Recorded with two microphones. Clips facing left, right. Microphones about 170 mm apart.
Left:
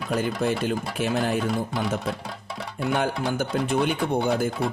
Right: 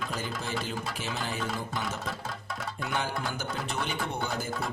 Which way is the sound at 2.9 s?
55° left (ahead or behind).